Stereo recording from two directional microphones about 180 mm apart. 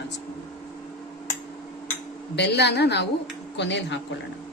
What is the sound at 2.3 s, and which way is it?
A woman's voice, 70° left (ahead or behind).